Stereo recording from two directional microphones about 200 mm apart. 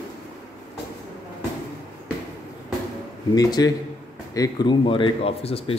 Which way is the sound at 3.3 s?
20° left (ahead or behind).